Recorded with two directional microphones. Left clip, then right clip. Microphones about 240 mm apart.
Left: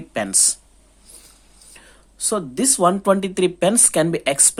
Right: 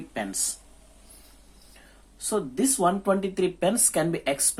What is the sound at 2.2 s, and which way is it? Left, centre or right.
Speech, left.